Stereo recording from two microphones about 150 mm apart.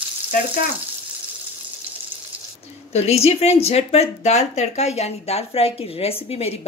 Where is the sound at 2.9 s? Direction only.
45° left (ahead or behind).